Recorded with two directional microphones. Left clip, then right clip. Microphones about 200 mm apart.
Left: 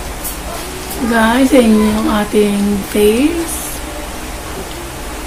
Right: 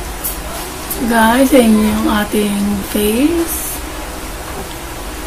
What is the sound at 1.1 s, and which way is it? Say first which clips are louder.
A woman's voice: right 1 dB; centre (ahead or behind).